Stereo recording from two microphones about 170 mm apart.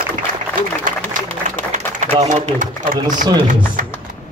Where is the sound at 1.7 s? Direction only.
45° right (ahead or behind).